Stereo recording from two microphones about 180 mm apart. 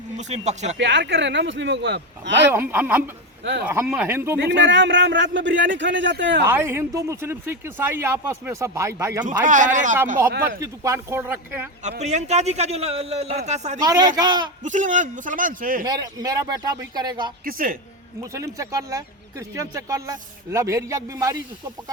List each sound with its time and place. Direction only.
0.2 s a man's voice: 40° right (ahead or behind)
0.8 s speech: 80° right
2.5 s speech: 10° right (ahead or behind)
4.4 s a man's voice: 75° right (ahead or behind)
6.4 s speech: 15° right (ahead or behind)
9.4 s a man's voice: 45° right (ahead or behind)
10.6 s speech: 15° right (ahead or behind)
11.8 s a man's voice: 40° right (ahead or behind)
13.7 s speech: 20° right (ahead or behind)
14.6 s a man's voice: 45° right (ahead or behind)
15.8 s speech: 20° right (ahead or behind)
17.4 s a man's voice: 50° right (ahead or behind)
18.2 s speech: 15° right (ahead or behind)